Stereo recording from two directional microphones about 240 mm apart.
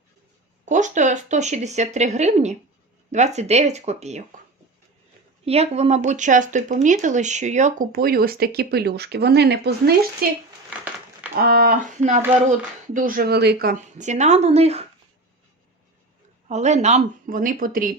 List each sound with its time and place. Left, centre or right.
0.6 s speech: right
5.5 s speech: right
11.3 s speech: right
16.5 s speech: right